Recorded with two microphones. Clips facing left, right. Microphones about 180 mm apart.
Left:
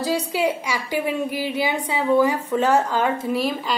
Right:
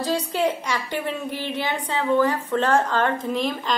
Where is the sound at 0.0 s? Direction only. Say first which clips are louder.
Left 1 dB; 10° left (ahead or behind).